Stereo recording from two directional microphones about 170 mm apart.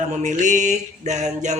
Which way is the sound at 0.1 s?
45° right (ahead or behind).